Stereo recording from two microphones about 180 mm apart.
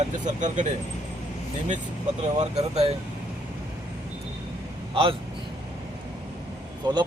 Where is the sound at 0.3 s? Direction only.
45° right (ahead or behind).